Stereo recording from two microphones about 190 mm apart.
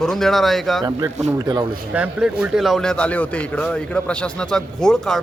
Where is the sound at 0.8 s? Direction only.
20° right (ahead or behind).